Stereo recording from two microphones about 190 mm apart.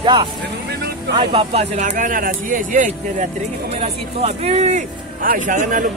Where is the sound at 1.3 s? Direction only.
35° right (ahead or behind).